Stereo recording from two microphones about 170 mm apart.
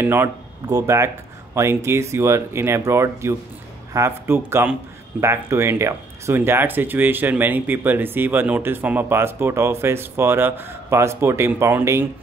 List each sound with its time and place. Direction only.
0.0 s speech: 15° right (ahead or behind)